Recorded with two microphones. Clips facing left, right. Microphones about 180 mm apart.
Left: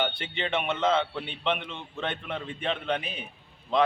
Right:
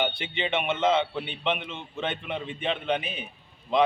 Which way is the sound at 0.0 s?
Centre (ahead or behind).